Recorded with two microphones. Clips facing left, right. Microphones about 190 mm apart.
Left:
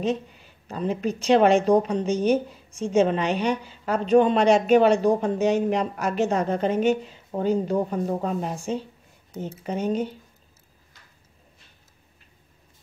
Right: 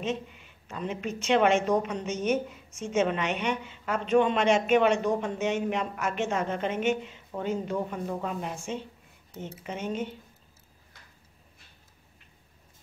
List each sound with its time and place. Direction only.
0.0 s speech: 35° left (ahead or behind)